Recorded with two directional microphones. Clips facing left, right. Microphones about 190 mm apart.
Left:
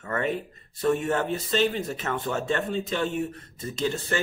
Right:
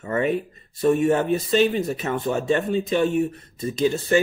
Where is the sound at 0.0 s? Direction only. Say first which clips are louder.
Right 5 dB; 15° right (ahead or behind).